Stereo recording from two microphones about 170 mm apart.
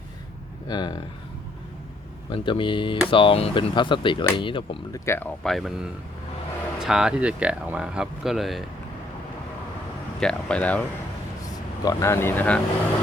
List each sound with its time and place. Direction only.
0.7 s speech: 25° left (ahead or behind)
2.3 s speech: 30° left (ahead or behind)
5.0 s speech: 15° left (ahead or behind)
5.4 s speech: centre (ahead or behind)
10.2 s speech: 5° left (ahead or behind)
11.9 s speech: 15° left (ahead or behind)